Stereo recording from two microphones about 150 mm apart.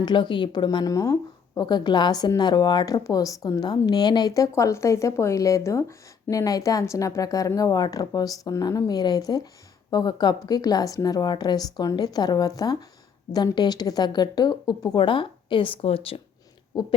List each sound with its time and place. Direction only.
0.0 s a woman's voice: 30° left (ahead or behind)